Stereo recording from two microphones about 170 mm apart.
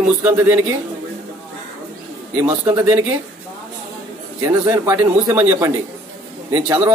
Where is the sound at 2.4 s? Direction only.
10° right (ahead or behind).